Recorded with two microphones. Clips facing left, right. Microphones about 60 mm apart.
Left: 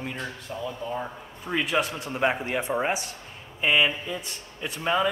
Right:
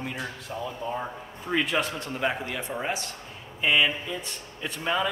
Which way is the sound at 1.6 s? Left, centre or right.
Centre.